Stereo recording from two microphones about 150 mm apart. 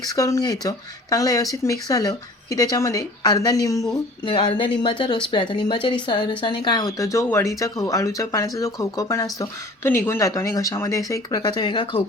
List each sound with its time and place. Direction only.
0.1 s speech: 20° left (ahead or behind)